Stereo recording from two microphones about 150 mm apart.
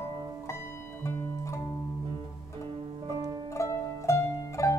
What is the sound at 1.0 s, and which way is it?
Music, 20° left (ahead or behind).